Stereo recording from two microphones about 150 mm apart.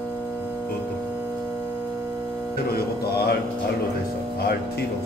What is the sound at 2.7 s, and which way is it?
Speech, 90° left.